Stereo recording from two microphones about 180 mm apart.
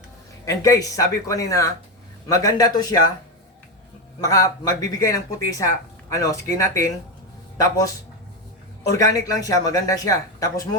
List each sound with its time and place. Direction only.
0.4 s speech: 20° left (ahead or behind)
4.2 s speech: 20° left (ahead or behind)